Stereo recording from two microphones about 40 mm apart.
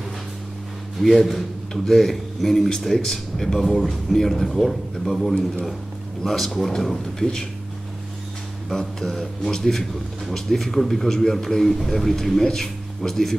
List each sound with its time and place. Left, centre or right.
0.9 s speech: centre
7.2 s speech: centre
8.6 s a man's voice: centre